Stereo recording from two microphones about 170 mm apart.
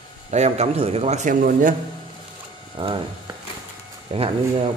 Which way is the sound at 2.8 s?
30° right (ahead or behind).